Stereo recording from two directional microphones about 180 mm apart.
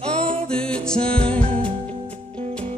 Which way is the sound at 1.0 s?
30° right (ahead or behind).